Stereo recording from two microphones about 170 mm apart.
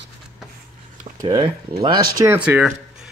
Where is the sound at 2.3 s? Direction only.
10° right (ahead or behind).